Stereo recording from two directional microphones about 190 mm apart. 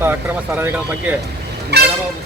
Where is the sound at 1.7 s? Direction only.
60° right (ahead or behind).